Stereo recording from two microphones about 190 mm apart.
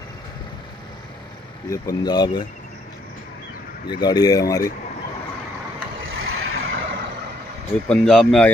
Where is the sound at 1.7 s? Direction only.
20° left (ahead or behind).